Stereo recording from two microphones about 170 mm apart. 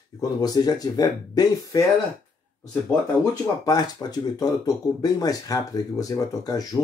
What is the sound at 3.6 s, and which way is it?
Speech, 25° left (ahead or behind).